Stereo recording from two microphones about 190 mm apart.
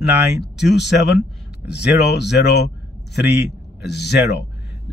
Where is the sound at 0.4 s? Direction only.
60° left (ahead or behind).